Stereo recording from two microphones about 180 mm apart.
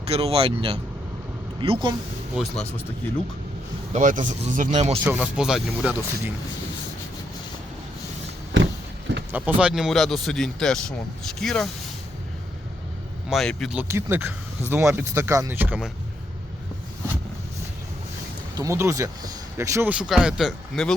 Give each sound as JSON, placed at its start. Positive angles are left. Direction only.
{"t": 0.1, "sound": "speech", "side_deg": -35}
{"t": 2.3, "sound": "speech", "side_deg": 0}
{"t": 3.9, "sound": "speech", "side_deg": -45}
{"t": 5.0, "sound": "speech", "side_deg": -5}
{"t": 9.3, "sound": "speech", "side_deg": -10}
{"t": 13.2, "sound": "speech", "side_deg": 0}
{"t": 13.8, "sound": "speech", "side_deg": -15}
{"t": 18.5, "sound": "speech", "side_deg": -15}